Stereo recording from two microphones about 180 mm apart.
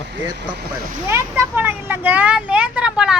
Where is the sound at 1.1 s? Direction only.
15° right (ahead or behind).